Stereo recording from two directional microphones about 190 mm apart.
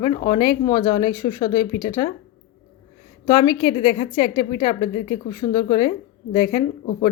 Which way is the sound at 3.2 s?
25° left (ahead or behind).